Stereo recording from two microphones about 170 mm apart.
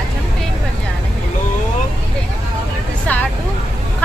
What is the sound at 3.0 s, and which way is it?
Speech, 10° left (ahead or behind).